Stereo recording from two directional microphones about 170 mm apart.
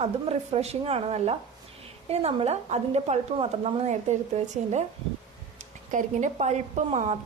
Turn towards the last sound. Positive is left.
turn(degrees=-40)  # may be behind; listen again after turning